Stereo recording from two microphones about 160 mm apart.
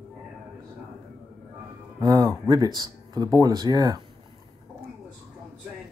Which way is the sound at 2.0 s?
20° right (ahead or behind).